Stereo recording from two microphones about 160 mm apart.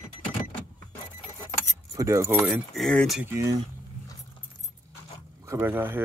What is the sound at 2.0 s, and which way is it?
Speech, 20° right (ahead or behind).